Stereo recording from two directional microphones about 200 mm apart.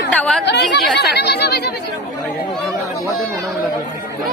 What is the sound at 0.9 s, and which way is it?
Speech, 55° left (ahead or behind).